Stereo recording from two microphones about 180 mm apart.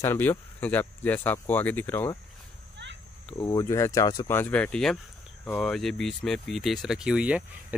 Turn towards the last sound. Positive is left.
turn(degrees=-5)  # may be behind; listen again after turning